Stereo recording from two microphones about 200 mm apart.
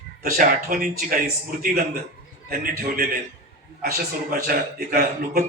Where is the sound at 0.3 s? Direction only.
45° right (ahead or behind).